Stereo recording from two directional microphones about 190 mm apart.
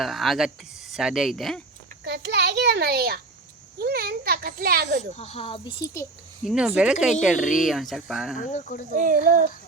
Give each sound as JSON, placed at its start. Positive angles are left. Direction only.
{"t": 0.0, "sound": "speech", "side_deg": 0}
{"t": 2.0, "sound": "a sound", "side_deg": -65}
{"t": 3.8, "sound": "speech", "side_deg": -55}
{"t": 5.1, "sound": "speech", "side_deg": 35}
{"t": 6.4, "sound": "speech", "side_deg": 0}
{"t": 8.4, "sound": "speech", "side_deg": 45}
{"t": 9.0, "sound": "speech", "side_deg": -45}